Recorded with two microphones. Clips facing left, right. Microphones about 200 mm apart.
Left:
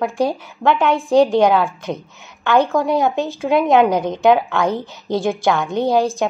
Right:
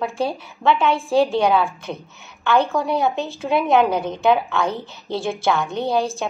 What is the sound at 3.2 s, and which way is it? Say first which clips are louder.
A woman's voice: left 4 dB; 15° left (ahead or behind).